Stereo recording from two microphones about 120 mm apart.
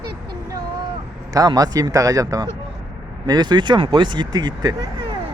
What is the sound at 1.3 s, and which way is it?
A man's voice, 30° right (ahead or behind).